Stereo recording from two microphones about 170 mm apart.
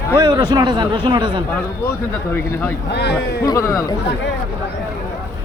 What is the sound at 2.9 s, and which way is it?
Speech, 80° left.